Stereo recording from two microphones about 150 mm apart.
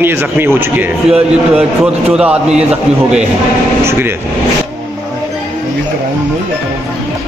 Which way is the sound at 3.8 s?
15° right (ahead or behind).